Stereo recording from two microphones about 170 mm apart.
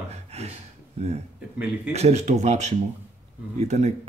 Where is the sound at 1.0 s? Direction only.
40° right (ahead or behind).